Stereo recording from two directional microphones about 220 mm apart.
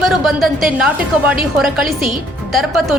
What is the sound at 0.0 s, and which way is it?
A woman's voice, centre (ahead or behind).